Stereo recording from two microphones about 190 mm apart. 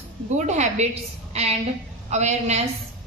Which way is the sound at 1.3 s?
35° right (ahead or behind).